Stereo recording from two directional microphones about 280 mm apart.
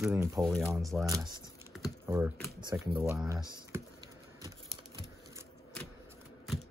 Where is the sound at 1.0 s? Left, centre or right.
Centre.